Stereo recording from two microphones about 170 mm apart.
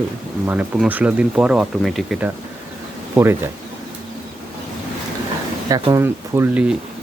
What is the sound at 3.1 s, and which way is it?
Speech, 15° right (ahead or behind).